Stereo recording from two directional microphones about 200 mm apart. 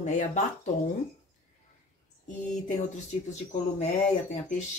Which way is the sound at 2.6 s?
40° left (ahead or behind).